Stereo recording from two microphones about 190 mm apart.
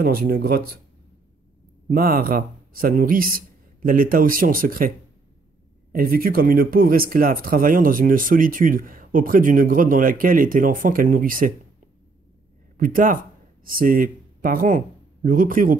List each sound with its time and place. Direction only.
0.0 s speech: 50° right (ahead or behind)
1.9 s speech: 50° right (ahead or behind)
12.7 s speech: 45° right (ahead or behind)